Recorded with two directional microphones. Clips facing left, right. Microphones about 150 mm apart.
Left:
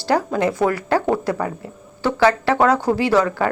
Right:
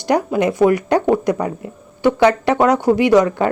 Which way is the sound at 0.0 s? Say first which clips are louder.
Right 2 dB; 15° right (ahead or behind).